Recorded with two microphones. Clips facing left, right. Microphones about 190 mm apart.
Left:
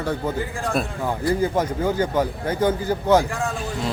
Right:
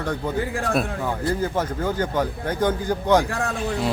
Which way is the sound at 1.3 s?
10° left (ahead or behind).